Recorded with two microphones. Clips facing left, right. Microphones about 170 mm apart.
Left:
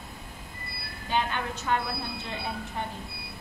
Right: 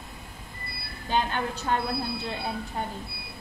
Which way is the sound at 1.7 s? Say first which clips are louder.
Even; 35° right (ahead or behind).